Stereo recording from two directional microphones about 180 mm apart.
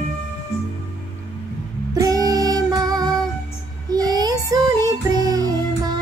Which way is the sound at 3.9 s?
20° right (ahead or behind).